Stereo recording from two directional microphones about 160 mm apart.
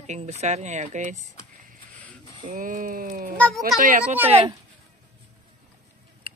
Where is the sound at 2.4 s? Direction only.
60° right (ahead or behind).